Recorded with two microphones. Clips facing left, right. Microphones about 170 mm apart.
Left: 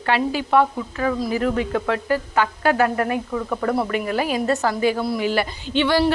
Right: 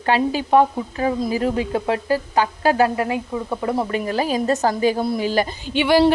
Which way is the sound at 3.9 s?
35° right (ahead or behind).